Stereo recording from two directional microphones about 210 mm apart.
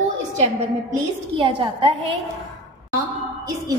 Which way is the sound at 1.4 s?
25° right (ahead or behind).